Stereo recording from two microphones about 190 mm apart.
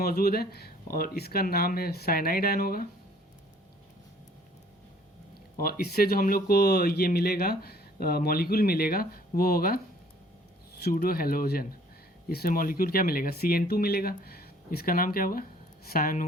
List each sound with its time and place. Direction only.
0.0 s speech: 50° left (ahead or behind)
5.5 s speech: 50° left (ahead or behind)